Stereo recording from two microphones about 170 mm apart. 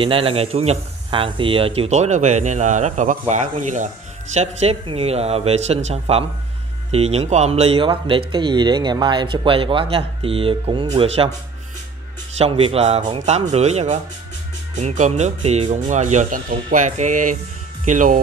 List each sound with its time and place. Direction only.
0.0 s speech: 35° right (ahead or behind)
12.4 s speech: 35° right (ahead or behind)